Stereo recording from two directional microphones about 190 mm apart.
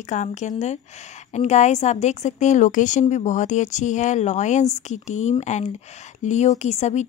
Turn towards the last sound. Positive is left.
turn(degrees=35)  # may be behind; listen again after turning